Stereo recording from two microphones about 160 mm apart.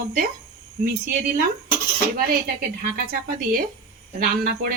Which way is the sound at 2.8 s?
70° right (ahead or behind).